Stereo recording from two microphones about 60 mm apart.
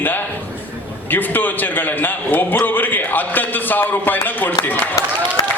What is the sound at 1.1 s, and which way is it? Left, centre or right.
A man's voice, left.